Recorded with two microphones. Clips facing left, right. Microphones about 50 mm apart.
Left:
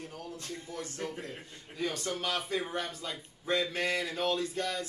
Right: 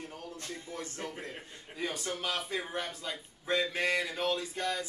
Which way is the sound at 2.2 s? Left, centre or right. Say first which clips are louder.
Left 2 dB; centre.